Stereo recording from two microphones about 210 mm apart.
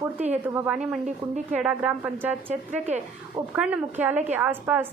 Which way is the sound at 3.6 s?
5° right (ahead or behind).